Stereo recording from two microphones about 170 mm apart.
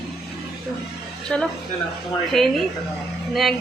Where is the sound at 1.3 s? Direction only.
5° left (ahead or behind).